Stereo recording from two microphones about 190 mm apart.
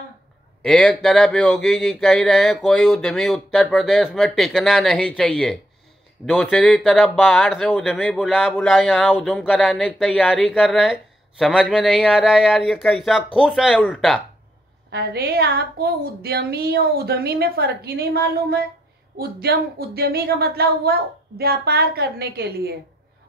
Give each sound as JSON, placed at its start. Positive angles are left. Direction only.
{"t": 0.7, "sound": "speech", "side_deg": 0}
{"t": 13.7, "sound": "speech", "side_deg": 5}
{"t": 14.9, "sound": "a woman's voice", "side_deg": -55}